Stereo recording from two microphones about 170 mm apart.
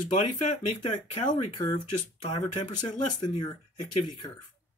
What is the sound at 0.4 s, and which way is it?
Speech, 45° left (ahead or behind).